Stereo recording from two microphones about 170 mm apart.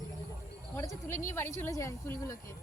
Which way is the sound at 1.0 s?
15° left (ahead or behind).